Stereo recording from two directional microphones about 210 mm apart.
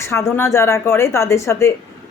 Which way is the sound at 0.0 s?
10° left (ahead or behind).